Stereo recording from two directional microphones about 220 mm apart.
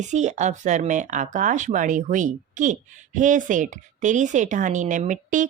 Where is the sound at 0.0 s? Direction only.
30° right (ahead or behind).